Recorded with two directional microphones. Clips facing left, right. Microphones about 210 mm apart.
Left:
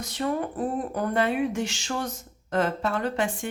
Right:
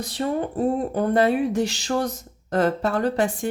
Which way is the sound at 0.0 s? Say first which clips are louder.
Right 3 dB; 35° right (ahead or behind).